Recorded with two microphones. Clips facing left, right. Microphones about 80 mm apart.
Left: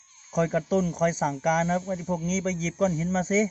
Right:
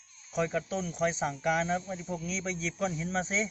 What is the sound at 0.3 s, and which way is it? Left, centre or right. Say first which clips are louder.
Speech: left 5 dB; centre.